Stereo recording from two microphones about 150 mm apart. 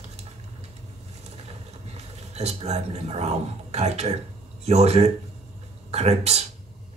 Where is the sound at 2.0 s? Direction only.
45° right (ahead or behind).